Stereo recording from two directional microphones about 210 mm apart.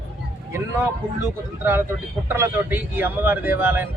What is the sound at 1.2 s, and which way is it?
A man's voice, 10° right (ahead or behind).